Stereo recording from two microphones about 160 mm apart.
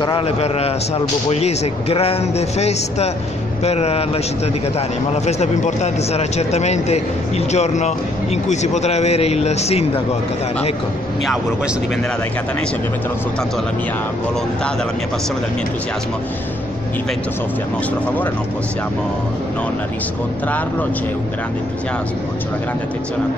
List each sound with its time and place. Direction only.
0.0 s a man's voice: 35° left (ahead or behind)